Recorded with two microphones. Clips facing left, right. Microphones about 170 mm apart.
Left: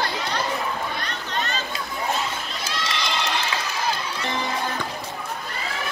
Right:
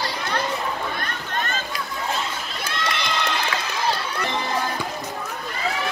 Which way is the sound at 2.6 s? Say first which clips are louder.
Right 2 dB; 55° right (ahead or behind).